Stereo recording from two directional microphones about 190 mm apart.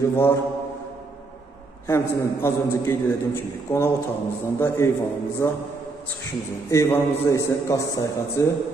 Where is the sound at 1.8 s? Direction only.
15° left (ahead or behind).